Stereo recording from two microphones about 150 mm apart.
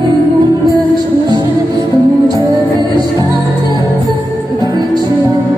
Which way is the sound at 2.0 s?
20° right (ahead or behind).